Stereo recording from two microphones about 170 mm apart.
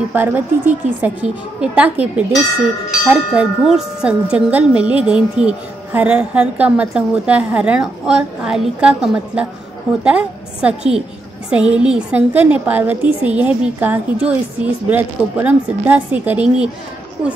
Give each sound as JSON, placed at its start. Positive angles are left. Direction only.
{"t": 0.1, "sound": "speech", "side_deg": -10}
{"t": 17.2, "sound": "speech", "side_deg": -30}